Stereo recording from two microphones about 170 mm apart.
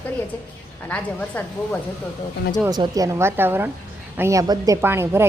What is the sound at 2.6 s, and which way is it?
A woman's voice, 25° right (ahead or behind).